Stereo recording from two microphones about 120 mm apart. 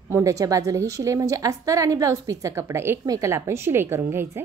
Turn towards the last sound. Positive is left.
turn(degrees=-20)  # may be behind; listen again after turning